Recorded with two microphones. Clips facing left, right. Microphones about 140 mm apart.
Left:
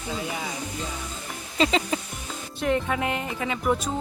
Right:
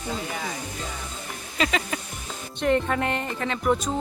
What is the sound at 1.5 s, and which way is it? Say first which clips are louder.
Music: left 3 dB; 30° left (ahead or behind).